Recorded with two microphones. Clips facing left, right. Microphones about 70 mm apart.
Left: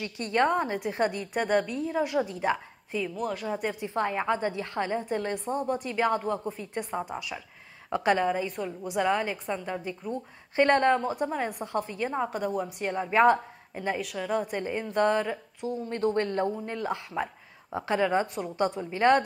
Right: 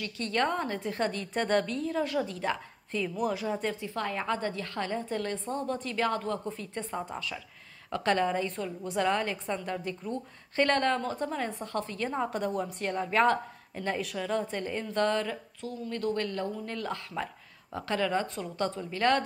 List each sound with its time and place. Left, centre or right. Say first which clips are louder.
0.0 s a woman's voice: left 4 dB; left
3.2 s speech: right 1 dB; centre
3.4 s a woman's voice: left 1 dB; centre
12.3 s a woman's voice: left 1 dB; centre
13.9 s a woman's voice: left 1 dB; centre; by 19.2 s left